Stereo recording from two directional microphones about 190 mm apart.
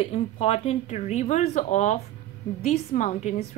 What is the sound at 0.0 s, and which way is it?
Speech, 30° left (ahead or behind).